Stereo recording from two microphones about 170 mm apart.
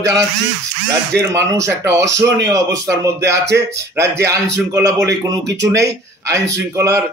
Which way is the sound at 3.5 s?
15° right (ahead or behind).